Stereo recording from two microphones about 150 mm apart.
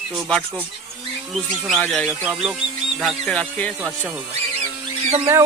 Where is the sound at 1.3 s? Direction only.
Centre (ahead or behind).